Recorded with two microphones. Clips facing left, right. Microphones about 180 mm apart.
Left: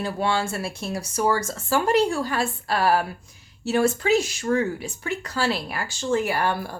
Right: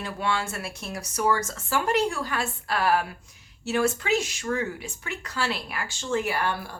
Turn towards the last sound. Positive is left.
turn(degrees=40)  # may be behind; listen again after turning